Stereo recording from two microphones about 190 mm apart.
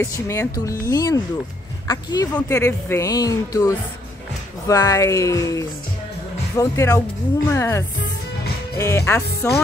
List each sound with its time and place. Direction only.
0.0 s speech: 15° left (ahead or behind)